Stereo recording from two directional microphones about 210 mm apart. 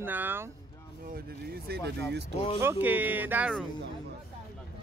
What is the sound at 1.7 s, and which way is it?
Speech, 50° right (ahead or behind).